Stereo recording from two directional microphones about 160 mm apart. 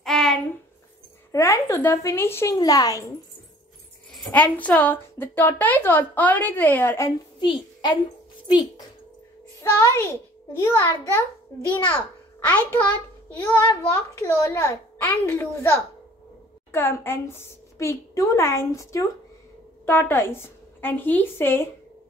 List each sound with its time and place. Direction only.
0.0 s a sound: 5° left (ahead or behind)
1.3 s a woman's voice: 20° left (ahead or behind)
4.1 s a woman's voice: 10° left (ahead or behind)
7.3 s a child's voice: 30° left (ahead or behind)
12.4 s a child's voice: 10° left (ahead or behind)